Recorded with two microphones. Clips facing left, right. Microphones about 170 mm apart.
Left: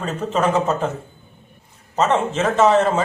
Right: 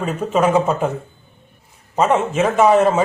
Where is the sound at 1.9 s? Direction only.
10° right (ahead or behind).